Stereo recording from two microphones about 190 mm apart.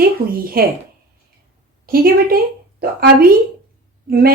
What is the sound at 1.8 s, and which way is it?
A woman's voice, 50° right (ahead or behind).